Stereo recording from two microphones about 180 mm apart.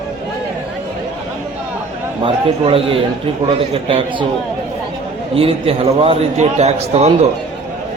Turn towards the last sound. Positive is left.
turn(degrees=-35)  # may be behind; listen again after turning